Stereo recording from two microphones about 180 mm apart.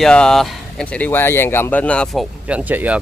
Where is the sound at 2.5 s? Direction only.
10° right (ahead or behind).